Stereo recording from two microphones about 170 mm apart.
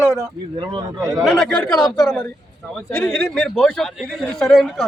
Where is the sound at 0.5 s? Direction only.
25° right (ahead or behind).